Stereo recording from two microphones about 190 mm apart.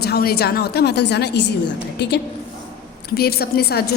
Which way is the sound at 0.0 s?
55° left (ahead or behind).